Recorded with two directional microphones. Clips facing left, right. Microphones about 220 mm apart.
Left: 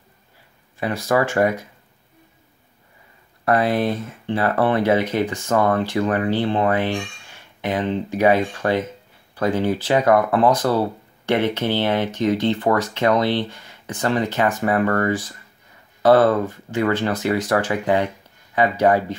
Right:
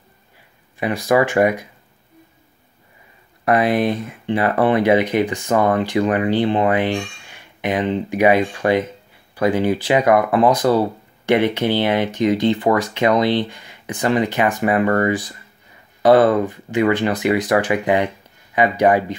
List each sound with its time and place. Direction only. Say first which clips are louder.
0.7 s speech: right 3 dB; 15° right (ahead or behind)
3.4 s speech: right 2 dB; 15° right (ahead or behind)